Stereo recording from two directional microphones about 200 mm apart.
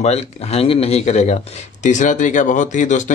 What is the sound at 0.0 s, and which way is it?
Speech, 30° left (ahead or behind).